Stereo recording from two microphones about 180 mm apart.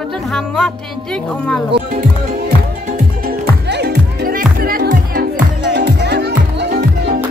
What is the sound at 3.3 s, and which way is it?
Music, 65° right (ahead or behind).